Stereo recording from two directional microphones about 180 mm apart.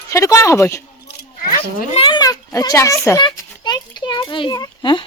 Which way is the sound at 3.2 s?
25° left (ahead or behind).